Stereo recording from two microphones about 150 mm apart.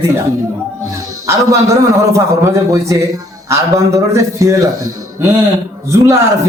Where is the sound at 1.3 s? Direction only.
20° right (ahead or behind).